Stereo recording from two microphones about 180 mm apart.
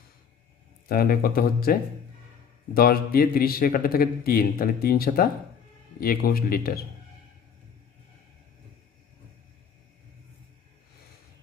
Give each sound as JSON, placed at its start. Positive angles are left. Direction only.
{"t": 0.8, "sound": "speech", "side_deg": 55}